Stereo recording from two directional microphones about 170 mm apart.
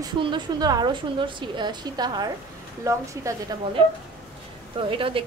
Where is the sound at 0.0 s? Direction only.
25° right (ahead or behind).